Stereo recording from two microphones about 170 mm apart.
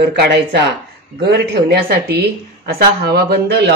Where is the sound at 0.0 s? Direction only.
85° right.